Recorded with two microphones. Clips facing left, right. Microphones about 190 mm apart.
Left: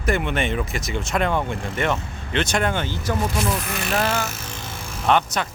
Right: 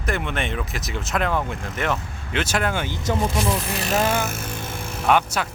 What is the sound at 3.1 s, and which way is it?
Speech, 15° right (ahead or behind).